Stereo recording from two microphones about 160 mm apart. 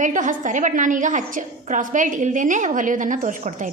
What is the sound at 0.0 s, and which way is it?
A woman's voice, 50° right (ahead or behind).